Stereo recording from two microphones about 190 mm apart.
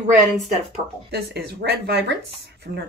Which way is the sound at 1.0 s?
60° right (ahead or behind).